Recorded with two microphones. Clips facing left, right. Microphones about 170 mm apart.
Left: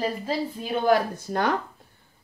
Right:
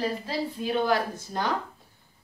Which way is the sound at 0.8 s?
60° left (ahead or behind).